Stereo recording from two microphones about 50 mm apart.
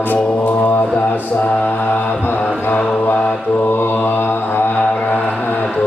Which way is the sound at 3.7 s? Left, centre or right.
Left.